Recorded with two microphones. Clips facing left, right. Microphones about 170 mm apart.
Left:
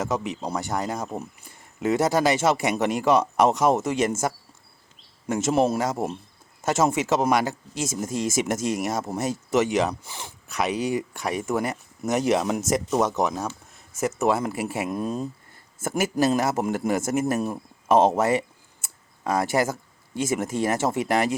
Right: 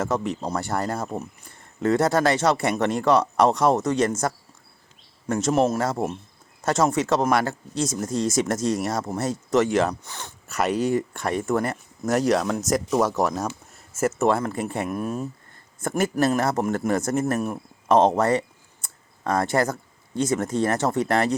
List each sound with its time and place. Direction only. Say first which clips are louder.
0.0 s speech: right 2 dB; centre (ahead or behind)
5.3 s speech: right 1 dB; 5° left (ahead or behind)
5.8 s speech: right 1 dB; centre (ahead or behind)
7.9 s speech: even; 25° left (ahead or behind)
8.8 s speech: right 1 dB; centre (ahead or behind)
13.5 s a sound: right 3 dB; 5° right (ahead or behind)
14.2 s speech: even; centre (ahead or behind)
14.8 s speech: even; 15° left (ahead or behind)
15.8 s speech: right 1 dB; 5° left (ahead or behind)